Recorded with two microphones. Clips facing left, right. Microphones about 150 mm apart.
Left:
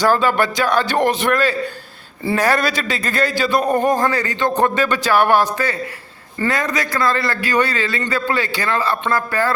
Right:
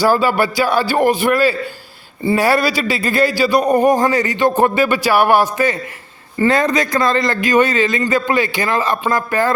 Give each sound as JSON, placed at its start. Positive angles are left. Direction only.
{"t": 0.0, "sound": "speech", "side_deg": -5}
{"t": 6.4, "sound": "a man's voice", "side_deg": -25}